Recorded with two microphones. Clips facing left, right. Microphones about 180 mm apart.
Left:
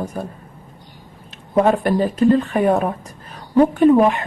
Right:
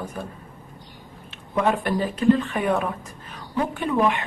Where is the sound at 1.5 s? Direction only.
40° left (ahead or behind).